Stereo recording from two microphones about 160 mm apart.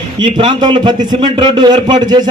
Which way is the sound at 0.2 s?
30° right (ahead or behind).